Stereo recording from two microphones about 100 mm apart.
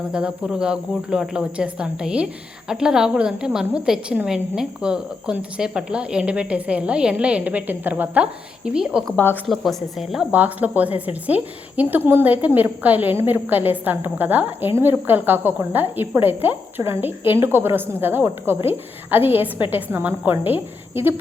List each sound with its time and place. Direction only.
0.1 s speech: 10° right (ahead or behind)
9.1 s a woman's voice: 20° left (ahead or behind)
9.5 s speech: centre (ahead or behind)
10.3 s a woman's voice: 15° right (ahead or behind)